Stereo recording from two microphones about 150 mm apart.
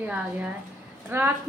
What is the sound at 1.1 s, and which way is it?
Speech, 15° right (ahead or behind).